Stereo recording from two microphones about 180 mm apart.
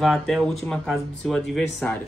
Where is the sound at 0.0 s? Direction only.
Centre (ahead or behind).